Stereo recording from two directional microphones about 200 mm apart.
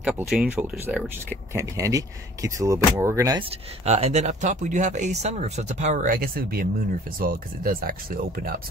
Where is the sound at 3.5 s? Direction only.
30° right (ahead or behind).